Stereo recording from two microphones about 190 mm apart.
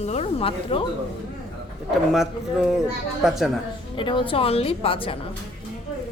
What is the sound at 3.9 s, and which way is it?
A woman's voice, 25° left (ahead or behind).